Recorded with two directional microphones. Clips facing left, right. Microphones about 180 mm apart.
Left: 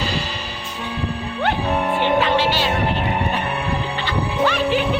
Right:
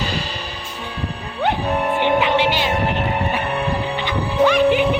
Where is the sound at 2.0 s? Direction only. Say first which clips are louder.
Right 1 dB; 15° right (ahead or behind).